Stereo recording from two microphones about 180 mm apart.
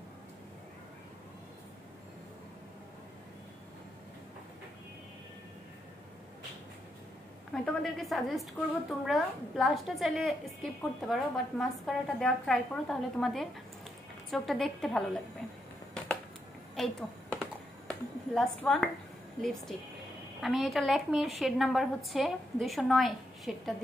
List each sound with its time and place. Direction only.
7.5 s a woman's voice: centre (ahead or behind)
16.7 s a sound: centre (ahead or behind)
19.4 s a woman's voice: centre (ahead or behind)